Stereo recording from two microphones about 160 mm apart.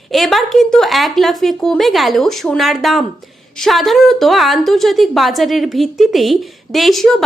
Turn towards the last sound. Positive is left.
turn(degrees=0)  # may be behind; listen again after turning